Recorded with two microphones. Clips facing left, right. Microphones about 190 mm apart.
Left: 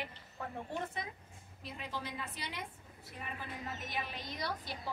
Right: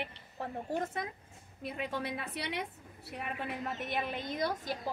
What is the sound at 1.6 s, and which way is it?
A woman's voice, 55° right (ahead or behind).